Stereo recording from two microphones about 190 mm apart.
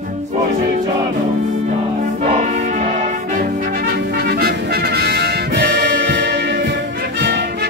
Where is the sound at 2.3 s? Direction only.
40° right (ahead or behind).